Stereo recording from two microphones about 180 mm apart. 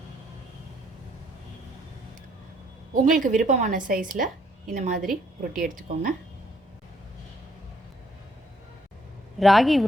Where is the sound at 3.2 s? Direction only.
45° right (ahead or behind).